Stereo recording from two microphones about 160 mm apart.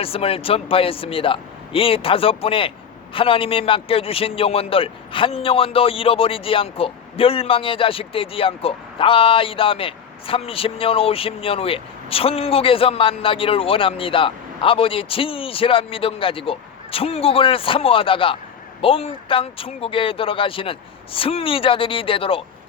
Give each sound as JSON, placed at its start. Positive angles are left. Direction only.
{"t": 0.0, "sound": "speech", "side_deg": 35}